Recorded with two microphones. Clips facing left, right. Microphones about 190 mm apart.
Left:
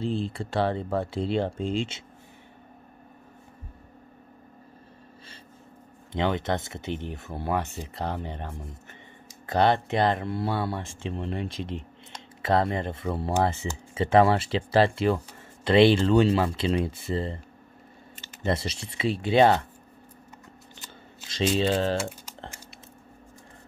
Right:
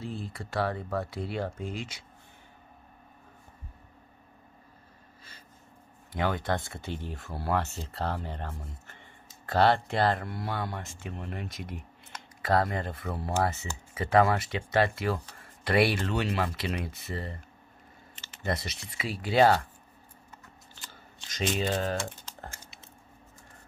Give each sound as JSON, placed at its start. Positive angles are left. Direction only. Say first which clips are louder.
{"t": 0.0, "sound": "speech", "louder": "left 9 dB", "side_deg": 30}
{"t": 6.1, "sound": "speech", "louder": "left 3 dB", "side_deg": 20}
{"t": 21.5, "sound": "speech", "louder": "left 5 dB", "side_deg": 30}